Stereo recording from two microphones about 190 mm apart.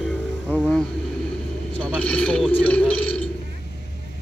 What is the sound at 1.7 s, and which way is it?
A man's voice, 5° left (ahead or behind).